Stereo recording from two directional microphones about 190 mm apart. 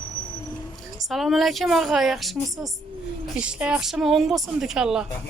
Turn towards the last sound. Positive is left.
turn(degrees=-5)  # may be behind; listen again after turning